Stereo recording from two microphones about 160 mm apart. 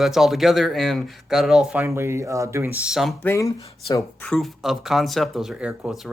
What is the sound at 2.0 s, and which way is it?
Speech, 15° right (ahead or behind).